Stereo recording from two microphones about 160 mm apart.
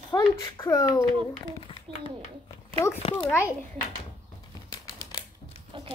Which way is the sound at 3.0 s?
35° left (ahead or behind).